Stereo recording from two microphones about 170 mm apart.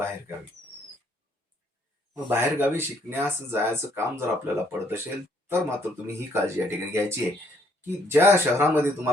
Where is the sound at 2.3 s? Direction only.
15° right (ahead or behind).